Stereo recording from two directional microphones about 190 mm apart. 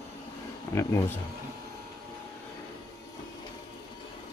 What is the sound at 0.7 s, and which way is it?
Speech, 15° left (ahead or behind).